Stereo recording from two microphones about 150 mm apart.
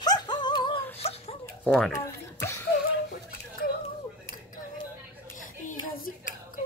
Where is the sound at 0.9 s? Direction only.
45° left (ahead or behind).